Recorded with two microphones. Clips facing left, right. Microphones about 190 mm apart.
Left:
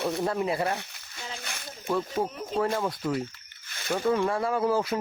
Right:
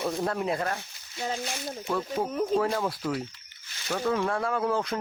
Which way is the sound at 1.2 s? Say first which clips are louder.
Right 8 dB; 50° right (ahead or behind).